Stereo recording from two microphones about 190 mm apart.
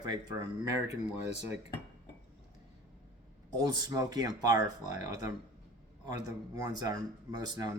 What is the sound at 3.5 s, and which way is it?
Speech, 20° right (ahead or behind).